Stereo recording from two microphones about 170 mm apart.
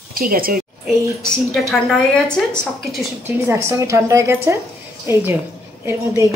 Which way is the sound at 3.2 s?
15° right (ahead or behind).